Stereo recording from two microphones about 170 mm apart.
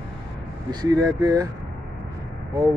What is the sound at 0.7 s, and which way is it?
Speech, 25° right (ahead or behind).